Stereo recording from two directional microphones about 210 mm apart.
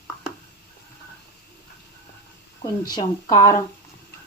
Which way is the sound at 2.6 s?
20° left (ahead or behind).